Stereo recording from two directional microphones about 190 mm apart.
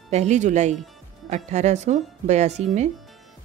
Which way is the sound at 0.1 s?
35° right (ahead or behind).